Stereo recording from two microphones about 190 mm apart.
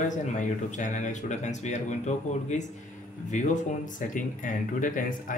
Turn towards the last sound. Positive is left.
turn(degrees=45)  # may be behind; listen again after turning